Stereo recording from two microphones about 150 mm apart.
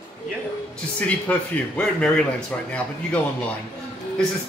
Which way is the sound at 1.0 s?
5° left (ahead or behind).